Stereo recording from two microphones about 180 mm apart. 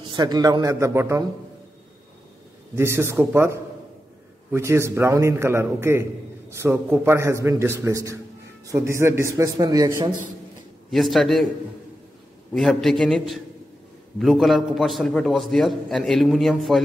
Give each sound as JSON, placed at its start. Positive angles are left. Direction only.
{"t": 0.0, "sound": "a man's voice", "side_deg": -25}
{"t": 2.7, "sound": "a man's voice", "side_deg": -15}
{"t": 10.9, "sound": "a man's voice", "side_deg": 0}
{"t": 12.5, "sound": "a man's voice", "side_deg": 0}